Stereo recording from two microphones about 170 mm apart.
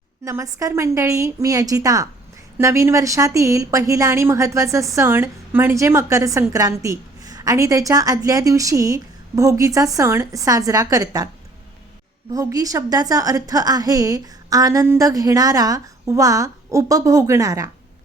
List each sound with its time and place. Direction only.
0.3 s speech: 20° right (ahead or behind)
12.3 s speech: 20° right (ahead or behind)